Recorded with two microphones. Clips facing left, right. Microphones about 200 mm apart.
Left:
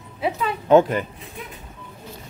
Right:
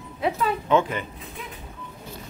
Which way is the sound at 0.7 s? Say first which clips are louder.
Left 8 dB; 40° left (ahead or behind).